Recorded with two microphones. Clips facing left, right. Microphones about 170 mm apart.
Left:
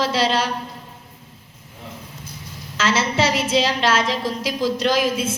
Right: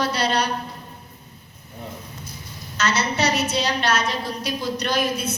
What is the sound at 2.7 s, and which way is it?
A woman's voice, 90° left.